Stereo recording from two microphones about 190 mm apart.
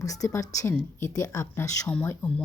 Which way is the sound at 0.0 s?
15° left (ahead or behind).